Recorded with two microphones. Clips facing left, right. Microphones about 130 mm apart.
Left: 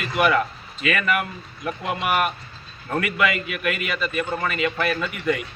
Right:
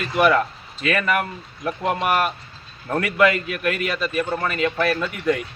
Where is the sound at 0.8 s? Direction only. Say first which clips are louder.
Right 2 dB; 35° right (ahead or behind).